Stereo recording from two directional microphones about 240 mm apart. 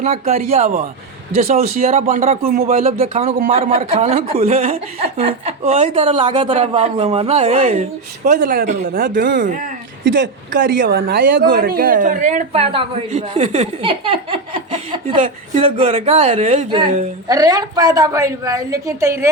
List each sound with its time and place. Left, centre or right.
0.0 s speech: right
10.0 s a woman's voice: right
10.6 s speech: right; by 19.3 s centre